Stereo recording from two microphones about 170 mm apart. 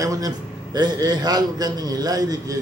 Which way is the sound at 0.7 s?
25° right (ahead or behind).